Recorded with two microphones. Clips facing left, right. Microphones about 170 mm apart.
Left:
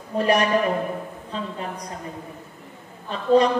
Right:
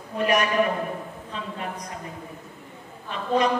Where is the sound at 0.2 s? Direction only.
35° left (ahead or behind).